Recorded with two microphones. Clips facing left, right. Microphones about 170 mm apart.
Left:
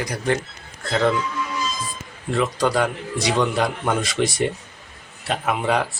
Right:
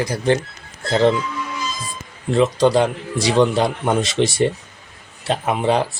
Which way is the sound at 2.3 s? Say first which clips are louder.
Right 5 dB; 25° right (ahead or behind).